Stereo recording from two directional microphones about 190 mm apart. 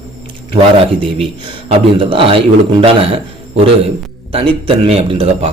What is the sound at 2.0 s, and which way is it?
A man's voice, 30° right (ahead or behind).